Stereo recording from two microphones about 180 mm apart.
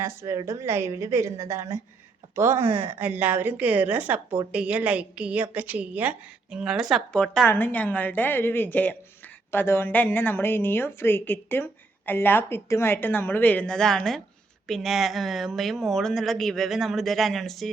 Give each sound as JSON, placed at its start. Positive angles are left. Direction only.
{"t": 0.0, "sound": "a woman's voice", "side_deg": -15}